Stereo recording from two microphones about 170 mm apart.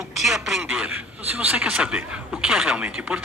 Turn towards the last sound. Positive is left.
turn(degrees=-5)  # may be behind; listen again after turning